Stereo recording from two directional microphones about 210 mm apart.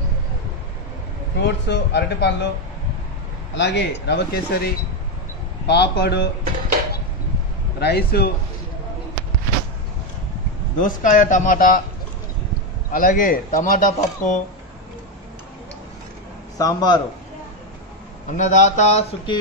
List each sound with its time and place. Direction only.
1.4 s speech: 55° left (ahead or behind)
3.5 s speech: 55° left (ahead or behind)
5.7 s a man's voice: 55° left (ahead or behind)
7.8 s a man's voice: 50° left (ahead or behind)
10.8 s a man's voice: 40° left (ahead or behind)
12.9 s a man's voice: 40° left (ahead or behind)
16.5 s a man's voice: 20° left (ahead or behind)
18.3 s a man's voice: 35° left (ahead or behind)